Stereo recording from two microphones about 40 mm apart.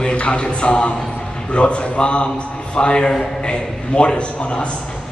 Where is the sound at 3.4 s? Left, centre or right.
Left.